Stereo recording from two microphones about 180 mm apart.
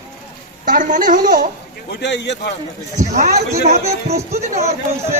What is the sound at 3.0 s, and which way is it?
Speech, 40° right (ahead or behind).